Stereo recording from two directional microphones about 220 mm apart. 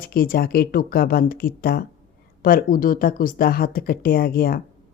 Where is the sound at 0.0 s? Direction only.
40° left (ahead or behind).